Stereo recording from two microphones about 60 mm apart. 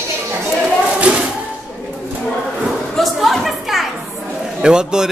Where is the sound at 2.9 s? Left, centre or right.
Centre.